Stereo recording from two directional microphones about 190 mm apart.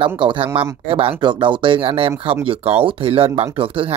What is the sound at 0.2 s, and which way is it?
Speech, 25° right (ahead or behind).